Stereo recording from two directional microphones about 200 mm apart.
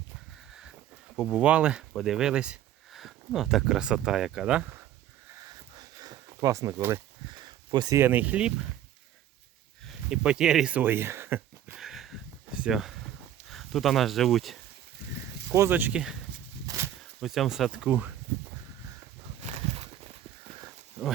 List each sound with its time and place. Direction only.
1.1 s speech: 5° right (ahead or behind)
5.7 s sniff: 20° right (ahead or behind)
7.4 s speech: 20° right (ahead or behind)
10.1 s speech: 5° right (ahead or behind)
15.5 s speech: 10° right (ahead or behind)
16.6 s a sound: 15° right (ahead or behind)
17.2 s speech: centre (ahead or behind)
19.4 s a sound: 30° right (ahead or behind)